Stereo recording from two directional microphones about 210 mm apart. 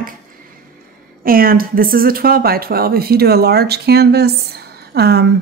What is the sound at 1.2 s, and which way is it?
Speech, 45° right (ahead or behind).